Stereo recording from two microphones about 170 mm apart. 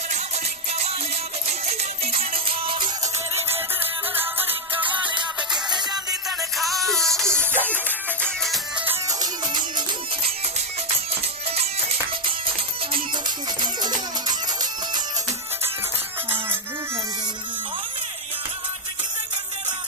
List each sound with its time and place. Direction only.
1.7 s music: 35° right (ahead or behind)
4.1 s music: 10° right (ahead or behind)
6.6 s music: centre (ahead or behind)
7.2 s music: 10° right (ahead or behind)
7.7 s music: 10° left (ahead or behind)
9.2 s music: 25° right (ahead or behind)
11.5 s music: 35° right (ahead or behind)